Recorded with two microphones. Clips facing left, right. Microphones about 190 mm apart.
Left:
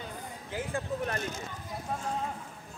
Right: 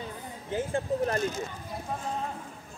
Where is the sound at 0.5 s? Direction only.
30° right (ahead or behind).